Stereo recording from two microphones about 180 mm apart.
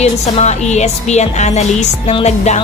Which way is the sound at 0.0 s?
40° left (ahead or behind).